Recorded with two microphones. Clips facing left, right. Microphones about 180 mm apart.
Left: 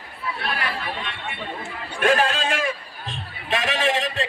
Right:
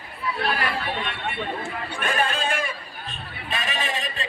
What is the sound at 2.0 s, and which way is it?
Speech, 90° left.